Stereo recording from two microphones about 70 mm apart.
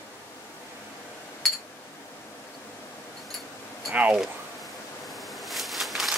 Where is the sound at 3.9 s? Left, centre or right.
Right.